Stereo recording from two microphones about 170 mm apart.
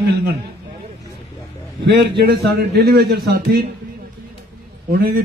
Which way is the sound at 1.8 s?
75° right (ahead or behind).